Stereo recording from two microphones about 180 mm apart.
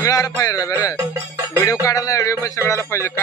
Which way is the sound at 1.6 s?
20° left (ahead or behind).